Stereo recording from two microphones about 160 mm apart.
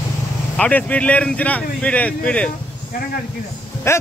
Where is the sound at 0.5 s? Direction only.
10° left (ahead or behind).